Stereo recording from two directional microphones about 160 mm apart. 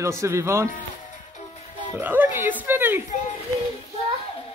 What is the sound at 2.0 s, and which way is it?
A woman's voice, 10° right (ahead or behind).